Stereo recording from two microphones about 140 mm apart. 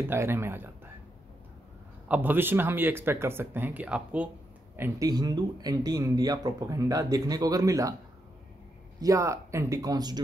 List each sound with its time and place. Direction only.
0.1 s speech: 15° right (ahead or behind)
2.0 s speech: 10° right (ahead or behind)
5.0 s speech: 30° right (ahead or behind)
9.0 s speech: 20° right (ahead or behind)